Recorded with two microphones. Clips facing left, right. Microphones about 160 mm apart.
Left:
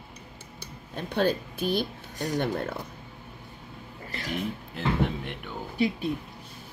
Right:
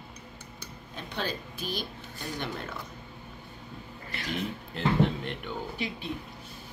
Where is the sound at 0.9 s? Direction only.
55° left (ahead or behind).